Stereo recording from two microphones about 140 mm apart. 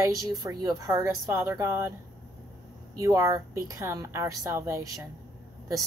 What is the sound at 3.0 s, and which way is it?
A woman's voice, 20° right (ahead or behind).